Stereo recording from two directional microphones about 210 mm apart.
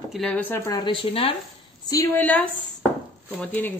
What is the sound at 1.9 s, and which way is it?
Speech, 10° left (ahead or behind).